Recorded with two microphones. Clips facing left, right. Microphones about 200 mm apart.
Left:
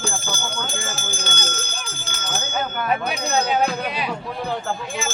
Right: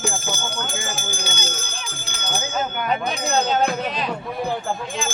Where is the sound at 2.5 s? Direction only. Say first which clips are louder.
Left 1 dB; 5° left (ahead or behind).